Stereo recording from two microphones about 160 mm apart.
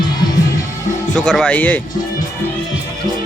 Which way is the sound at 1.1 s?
5° left (ahead or behind).